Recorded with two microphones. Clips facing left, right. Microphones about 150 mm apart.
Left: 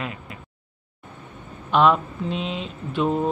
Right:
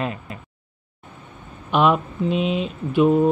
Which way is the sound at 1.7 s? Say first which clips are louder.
Even; 15° right (ahead or behind).